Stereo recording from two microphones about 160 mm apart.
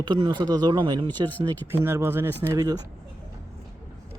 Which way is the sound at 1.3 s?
10° left (ahead or behind).